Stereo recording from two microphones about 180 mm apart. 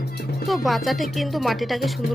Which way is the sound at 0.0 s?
65° left (ahead or behind).